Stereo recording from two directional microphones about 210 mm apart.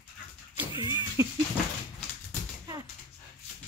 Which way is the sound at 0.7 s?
15° right (ahead or behind).